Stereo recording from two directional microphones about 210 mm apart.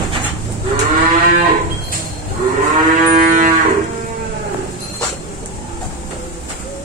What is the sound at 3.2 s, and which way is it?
Cattle, 40° right (ahead or behind).